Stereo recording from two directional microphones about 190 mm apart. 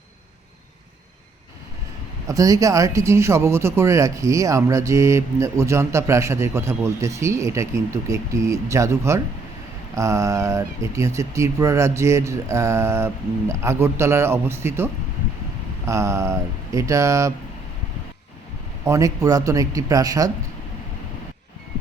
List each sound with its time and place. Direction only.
2.2 s speech: 15° right (ahead or behind)
15.9 s speech: 15° right (ahead or behind)
18.9 s speech: 15° right (ahead or behind)